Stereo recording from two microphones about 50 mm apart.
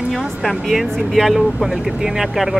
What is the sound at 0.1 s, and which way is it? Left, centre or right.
Speech, centre.